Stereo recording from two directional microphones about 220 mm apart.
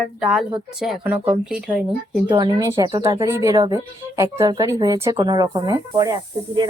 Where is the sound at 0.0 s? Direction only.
Centre (ahead or behind).